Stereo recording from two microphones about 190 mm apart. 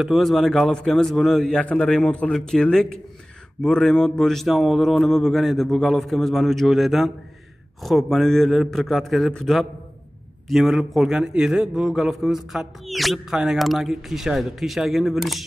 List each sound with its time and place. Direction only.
0.0 s a man's voice: centre (ahead or behind)